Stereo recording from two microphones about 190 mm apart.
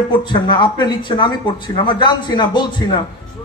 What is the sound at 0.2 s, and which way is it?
A man's voice, 25° left (ahead or behind).